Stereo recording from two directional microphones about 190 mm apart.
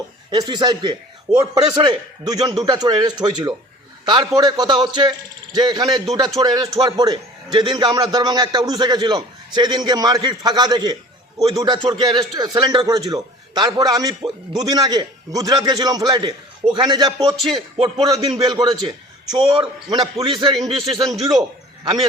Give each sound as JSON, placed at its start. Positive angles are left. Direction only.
{"t": 0.3, "sound": "a man's voice", "side_deg": -25}